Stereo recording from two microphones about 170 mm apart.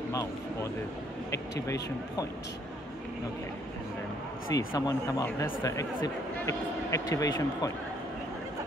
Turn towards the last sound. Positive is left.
turn(degrees=20)  # may be behind; listen again after turning